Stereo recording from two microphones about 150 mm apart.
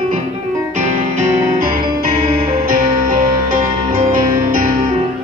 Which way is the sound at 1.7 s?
70° right (ahead or behind).